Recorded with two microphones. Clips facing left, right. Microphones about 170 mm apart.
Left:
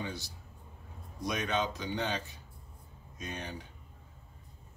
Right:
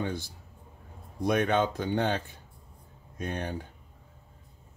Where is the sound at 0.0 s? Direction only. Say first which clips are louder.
Right 7 dB; 50° right (ahead or behind).